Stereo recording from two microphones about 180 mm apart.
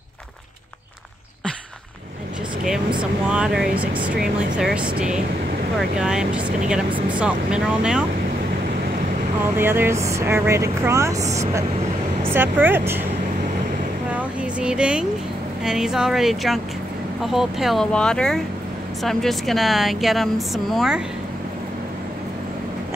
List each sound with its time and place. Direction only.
3.0 s a woman's voice: 5° right (ahead or behind)
9.6 s speech: 15° right (ahead or behind)
14.1 s a sound: 5° right (ahead or behind)
15.6 s a woman's voice: 5° right (ahead or behind)